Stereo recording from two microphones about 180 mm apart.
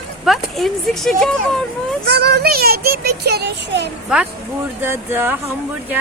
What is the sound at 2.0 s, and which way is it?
Speech, 65° right (ahead or behind).